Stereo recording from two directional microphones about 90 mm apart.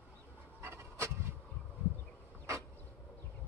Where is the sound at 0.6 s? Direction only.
30° right (ahead or behind).